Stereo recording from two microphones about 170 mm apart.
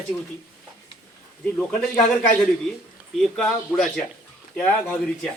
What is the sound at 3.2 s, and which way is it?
A man's voice, 5° left (ahead or behind).